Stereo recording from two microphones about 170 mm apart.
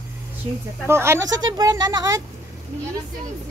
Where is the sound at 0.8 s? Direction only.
15° right (ahead or behind).